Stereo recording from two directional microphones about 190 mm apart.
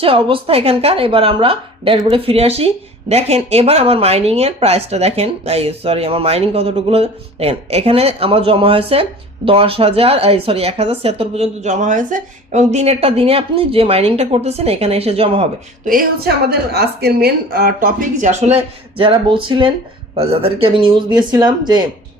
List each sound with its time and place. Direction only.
0.0 s a woman's voice: 30° right (ahead or behind)
15.9 s a woman's voice: 50° right (ahead or behind); by 21.8 s 20° right (ahead or behind)